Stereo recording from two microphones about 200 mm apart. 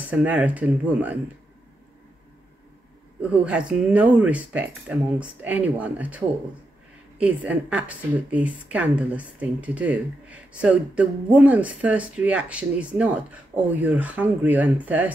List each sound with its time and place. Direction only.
0.1 s a woman's voice: 5° right (ahead or behind)
3.2 s a woman's voice: 5° right (ahead or behind)